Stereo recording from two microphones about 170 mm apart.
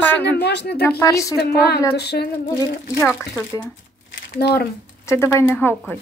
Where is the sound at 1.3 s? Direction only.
70° left (ahead or behind).